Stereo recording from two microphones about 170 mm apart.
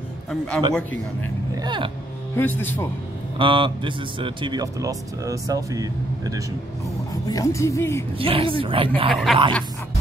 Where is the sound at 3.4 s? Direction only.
30° right (ahead or behind).